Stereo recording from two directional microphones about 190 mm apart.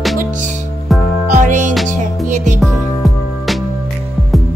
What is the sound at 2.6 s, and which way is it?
Music, centre (ahead or behind).